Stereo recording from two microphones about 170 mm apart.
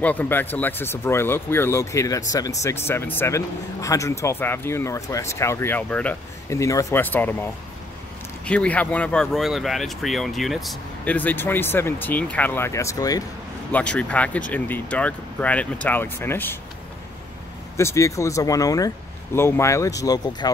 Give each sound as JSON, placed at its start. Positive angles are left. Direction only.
{"t": 0.0, "sound": "speech", "side_deg": 10}
{"t": 8.5, "sound": "speech", "side_deg": 5}
{"t": 13.7, "sound": "speech", "side_deg": 10}
{"t": 17.7, "sound": "speech", "side_deg": 15}